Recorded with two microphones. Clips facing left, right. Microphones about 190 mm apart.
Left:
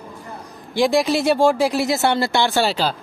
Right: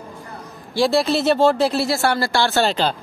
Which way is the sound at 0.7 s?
15° left (ahead or behind).